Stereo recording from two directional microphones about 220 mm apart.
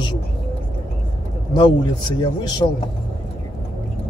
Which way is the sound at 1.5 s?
20° left (ahead or behind).